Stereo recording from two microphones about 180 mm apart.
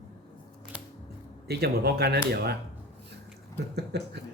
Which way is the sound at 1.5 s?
65° right (ahead or behind).